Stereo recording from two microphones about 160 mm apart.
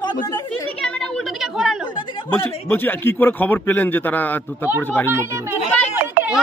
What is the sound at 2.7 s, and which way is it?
A man's voice, 15° left (ahead or behind).